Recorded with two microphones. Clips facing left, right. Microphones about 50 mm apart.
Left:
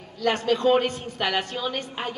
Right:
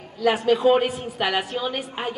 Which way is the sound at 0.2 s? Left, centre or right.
Centre.